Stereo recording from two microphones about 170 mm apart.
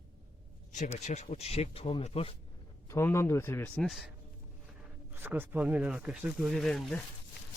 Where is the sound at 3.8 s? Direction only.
Centre (ahead or behind).